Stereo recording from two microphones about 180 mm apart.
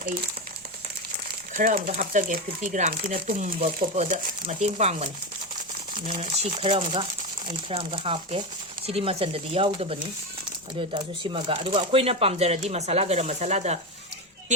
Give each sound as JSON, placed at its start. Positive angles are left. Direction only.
{"t": 1.1, "sound": "crumpling", "side_deg": -50}
{"t": 2.0, "sound": "speech", "side_deg": -50}
{"t": 6.1, "sound": "speech", "side_deg": -35}